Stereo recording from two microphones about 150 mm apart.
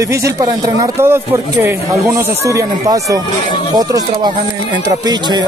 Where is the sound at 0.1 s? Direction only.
20° right (ahead or behind).